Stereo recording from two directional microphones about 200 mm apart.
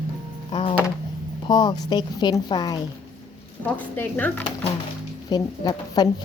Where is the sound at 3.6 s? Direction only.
10° left (ahead or behind).